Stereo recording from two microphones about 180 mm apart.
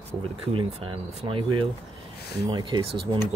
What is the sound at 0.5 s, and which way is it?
Speech, 30° right (ahead or behind).